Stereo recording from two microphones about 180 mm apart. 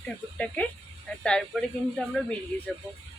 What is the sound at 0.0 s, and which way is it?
Speech, 5° left (ahead or behind).